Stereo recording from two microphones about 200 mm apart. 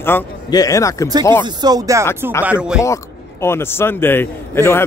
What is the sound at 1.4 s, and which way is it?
Speech, 20° right (ahead or behind).